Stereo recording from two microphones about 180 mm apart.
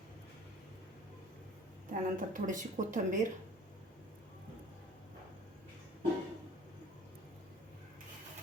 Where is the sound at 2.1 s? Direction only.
45° right (ahead or behind).